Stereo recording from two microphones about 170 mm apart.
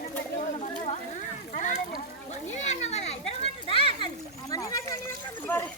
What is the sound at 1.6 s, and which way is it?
A child's voice, 50° left (ahead or behind).